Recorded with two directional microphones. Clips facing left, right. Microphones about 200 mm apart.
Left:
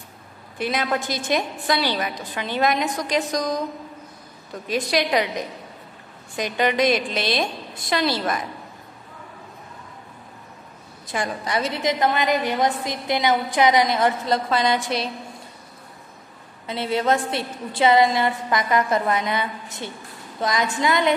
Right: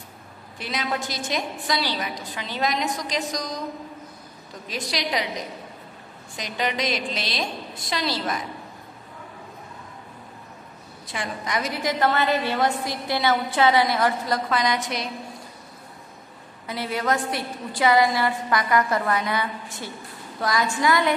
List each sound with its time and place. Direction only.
0.6 s a woman's voice: 55° left (ahead or behind)
4.6 s a woman's voice: 55° left (ahead or behind)
6.3 s a woman's voice: 55° left (ahead or behind)
11.1 s a woman's voice: 30° left (ahead or behind)
16.6 s a woman's voice: 25° left (ahead or behind)